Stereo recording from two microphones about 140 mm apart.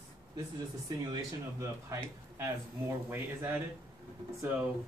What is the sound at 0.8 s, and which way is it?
Speech, 25° right (ahead or behind).